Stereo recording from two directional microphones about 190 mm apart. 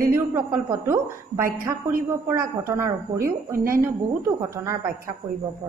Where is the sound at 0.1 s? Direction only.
10° right (ahead or behind).